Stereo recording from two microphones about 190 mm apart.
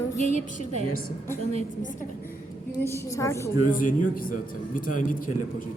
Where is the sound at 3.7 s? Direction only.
45° left (ahead or behind).